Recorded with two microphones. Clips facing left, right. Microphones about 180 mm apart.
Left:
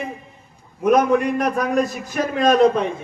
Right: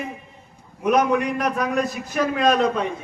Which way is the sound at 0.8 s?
45° left (ahead or behind).